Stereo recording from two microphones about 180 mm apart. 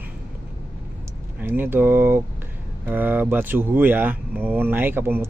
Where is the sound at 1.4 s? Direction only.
10° right (ahead or behind).